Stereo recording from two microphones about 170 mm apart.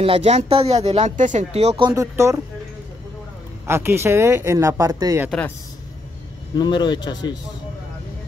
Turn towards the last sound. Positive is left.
turn(degrees=25)  # may be behind; listen again after turning